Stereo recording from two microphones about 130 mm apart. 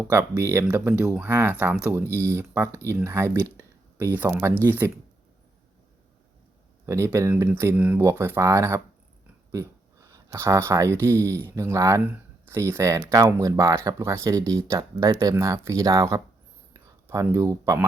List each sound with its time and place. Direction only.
0.1 s speech: 20° right (ahead or behind)
0.7 s speech: 10° right (ahead or behind)
2.2 s speech: 25° right (ahead or behind)
6.8 s speech: 20° right (ahead or behind)
10.1 s speech: 20° right (ahead or behind)